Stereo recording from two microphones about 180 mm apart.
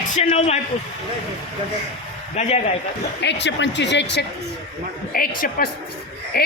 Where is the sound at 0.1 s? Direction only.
40° left (ahead or behind).